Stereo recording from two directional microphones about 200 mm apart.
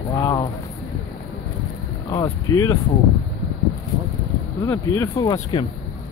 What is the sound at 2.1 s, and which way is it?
Speech, 15° left (ahead or behind).